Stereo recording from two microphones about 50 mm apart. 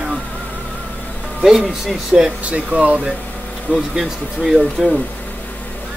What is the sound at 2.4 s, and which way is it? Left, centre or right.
Speech, right.